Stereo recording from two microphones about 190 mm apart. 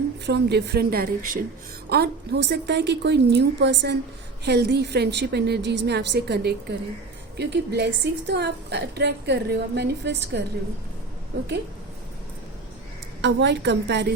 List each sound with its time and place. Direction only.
0.3 s a woman's voice: 60° right (ahead or behind)
1.9 s a woman's voice: 60° right (ahead or behind)
13.2 s a woman's voice: 65° right (ahead or behind)